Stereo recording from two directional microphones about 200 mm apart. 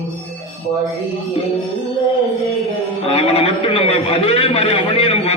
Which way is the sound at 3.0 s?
30° left (ahead or behind).